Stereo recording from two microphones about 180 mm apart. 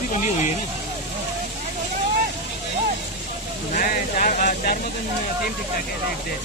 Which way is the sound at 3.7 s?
50° left (ahead or behind).